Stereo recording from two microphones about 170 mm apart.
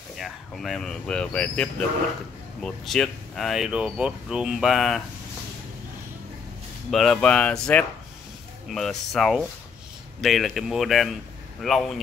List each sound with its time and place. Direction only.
0.2 s speech: centre (ahead or behind)
6.9 s speech: centre (ahead or behind)